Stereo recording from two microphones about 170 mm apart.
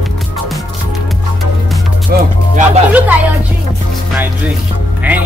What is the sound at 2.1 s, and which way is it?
Music, 65° right (ahead or behind).